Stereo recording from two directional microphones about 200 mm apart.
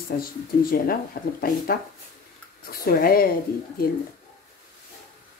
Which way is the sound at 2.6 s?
50° left (ahead or behind).